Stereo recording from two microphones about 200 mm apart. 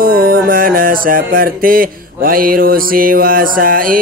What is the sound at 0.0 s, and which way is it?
Mantra, 45° right (ahead or behind).